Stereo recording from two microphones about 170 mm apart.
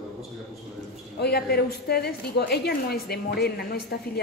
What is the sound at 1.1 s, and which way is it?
A woman's voice, 70° left (ahead or behind).